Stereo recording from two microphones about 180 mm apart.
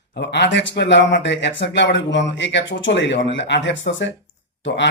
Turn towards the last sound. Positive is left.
turn(degrees=90)